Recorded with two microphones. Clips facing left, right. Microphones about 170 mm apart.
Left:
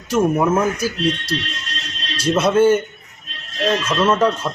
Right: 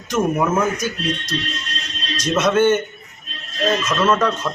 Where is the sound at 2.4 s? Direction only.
30° left (ahead or behind).